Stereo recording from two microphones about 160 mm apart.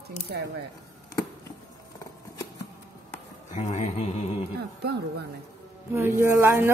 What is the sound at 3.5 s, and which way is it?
Speech, 50° left (ahead or behind).